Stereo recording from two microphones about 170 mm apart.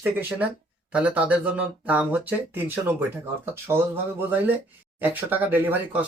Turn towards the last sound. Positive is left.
turn(degrees=-10)  # may be behind; listen again after turning